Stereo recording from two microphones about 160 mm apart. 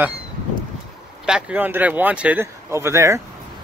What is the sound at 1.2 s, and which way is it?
Speech, 5° right (ahead or behind).